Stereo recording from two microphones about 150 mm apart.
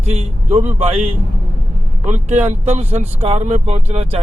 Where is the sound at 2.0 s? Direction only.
50° right (ahead or behind).